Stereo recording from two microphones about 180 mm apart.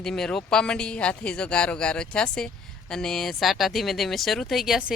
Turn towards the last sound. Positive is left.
turn(degrees=-5)  # may be behind; listen again after turning